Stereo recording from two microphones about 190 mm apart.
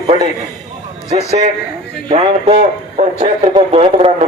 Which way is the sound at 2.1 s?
35° right (ahead or behind).